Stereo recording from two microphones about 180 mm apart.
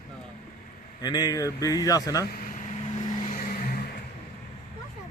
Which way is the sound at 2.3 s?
45° left (ahead or behind).